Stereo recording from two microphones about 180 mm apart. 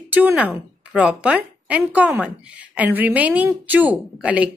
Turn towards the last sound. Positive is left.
turn(degrees=-5)  # may be behind; listen again after turning